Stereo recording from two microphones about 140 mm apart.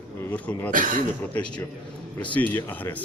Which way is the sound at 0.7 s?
70° right (ahead or behind).